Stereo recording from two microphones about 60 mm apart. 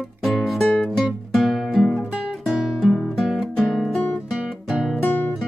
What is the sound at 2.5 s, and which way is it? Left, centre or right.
Guitar, centre.